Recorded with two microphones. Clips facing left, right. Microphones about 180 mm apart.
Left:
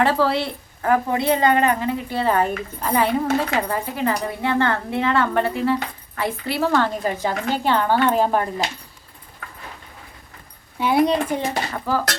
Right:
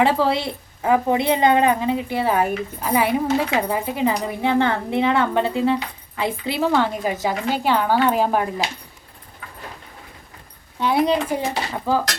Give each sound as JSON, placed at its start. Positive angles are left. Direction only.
{"t": 0.0, "sound": "a woman's voice", "side_deg": -15}
{"t": 10.8, "sound": "speech", "side_deg": 5}